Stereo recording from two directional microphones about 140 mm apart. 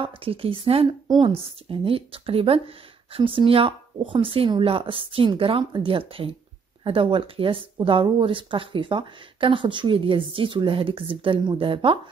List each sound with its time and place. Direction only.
0.0 s speech: 40° right (ahead or behind)
1.0 s a woman's voice: 30° right (ahead or behind)
1.4 s speech: 40° right (ahead or behind)